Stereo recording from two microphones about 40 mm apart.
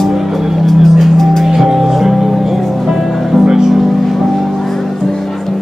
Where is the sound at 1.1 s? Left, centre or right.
Centre.